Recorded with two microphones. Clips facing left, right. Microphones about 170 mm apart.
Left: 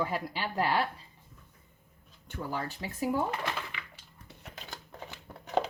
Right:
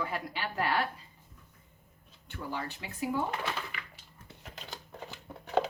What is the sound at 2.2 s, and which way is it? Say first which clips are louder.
Speech: left 2 dB; 45° left (ahead or behind).